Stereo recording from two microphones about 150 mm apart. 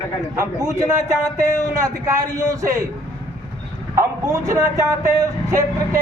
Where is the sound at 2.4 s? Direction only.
25° right (ahead or behind).